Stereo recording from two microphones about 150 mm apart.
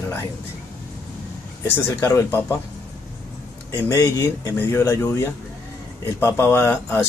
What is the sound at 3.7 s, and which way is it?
Speech, 20° left (ahead or behind).